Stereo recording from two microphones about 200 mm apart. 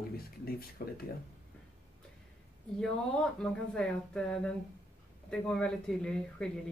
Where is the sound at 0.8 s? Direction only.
45° left (ahead or behind).